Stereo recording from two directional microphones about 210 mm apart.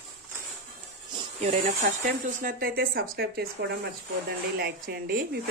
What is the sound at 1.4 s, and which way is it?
Speech, 35° right (ahead or behind).